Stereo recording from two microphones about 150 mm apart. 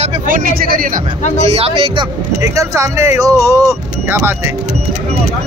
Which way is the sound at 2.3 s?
20° right (ahead or behind).